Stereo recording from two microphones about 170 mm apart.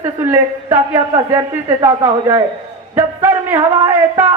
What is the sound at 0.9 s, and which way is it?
A woman's voice, 25° right (ahead or behind).